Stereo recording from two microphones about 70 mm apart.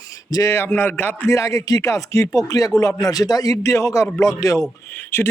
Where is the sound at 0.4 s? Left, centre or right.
Left.